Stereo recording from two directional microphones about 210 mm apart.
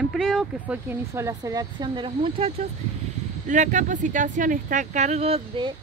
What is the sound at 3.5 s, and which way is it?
Speech, 35° right (ahead or behind).